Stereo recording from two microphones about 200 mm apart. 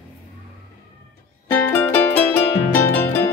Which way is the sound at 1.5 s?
10° left (ahead or behind).